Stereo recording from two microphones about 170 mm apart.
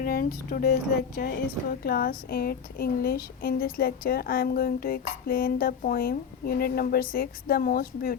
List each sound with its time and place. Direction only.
0.0 s speech: 55° left (ahead or behind)